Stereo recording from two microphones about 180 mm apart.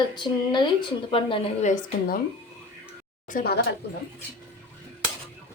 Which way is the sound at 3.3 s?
50° left (ahead or behind).